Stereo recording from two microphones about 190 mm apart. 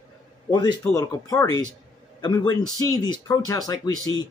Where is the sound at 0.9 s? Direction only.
20° left (ahead or behind).